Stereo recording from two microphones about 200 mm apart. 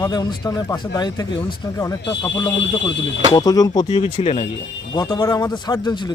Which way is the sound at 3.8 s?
30° left (ahead or behind).